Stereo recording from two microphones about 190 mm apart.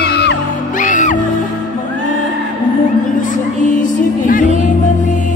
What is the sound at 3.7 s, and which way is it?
Music, 45° left (ahead or behind).